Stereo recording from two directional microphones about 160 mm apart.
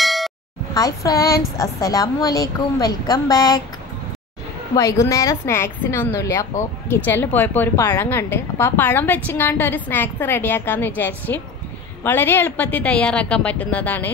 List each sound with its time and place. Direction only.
0.0 s a sound: centre (ahead or behind)
0.7 s a woman's voice: 20° left (ahead or behind)
4.7 s a woman's voice: 20° left (ahead or behind)